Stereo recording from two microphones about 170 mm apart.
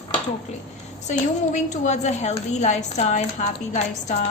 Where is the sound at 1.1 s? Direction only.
45° left (ahead or behind).